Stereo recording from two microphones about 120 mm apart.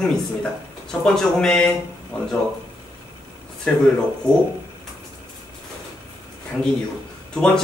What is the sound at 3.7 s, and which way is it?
Speech, 10° left (ahead or behind).